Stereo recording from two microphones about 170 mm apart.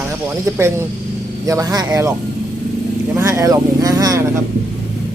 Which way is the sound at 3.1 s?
15° right (ahead or behind).